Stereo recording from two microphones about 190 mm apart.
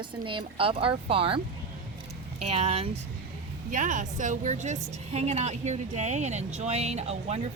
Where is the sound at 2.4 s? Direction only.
35° right (ahead or behind).